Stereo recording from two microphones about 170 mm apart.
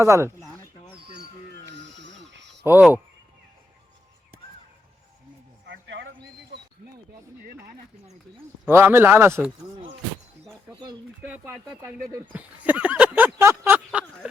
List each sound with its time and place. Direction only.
0.0 s speech: 15° right (ahead or behind)
1.7 s music: 90° right
2.6 s speech: 10° right (ahead or behind)
5.6 s a sound: 90° right
8.6 s speech: 15° right (ahead or behind)
11.2 s speech: 10° right (ahead or behind)